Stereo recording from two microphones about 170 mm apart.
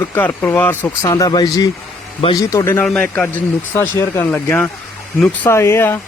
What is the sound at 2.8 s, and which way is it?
A man's voice, 5° left (ahead or behind).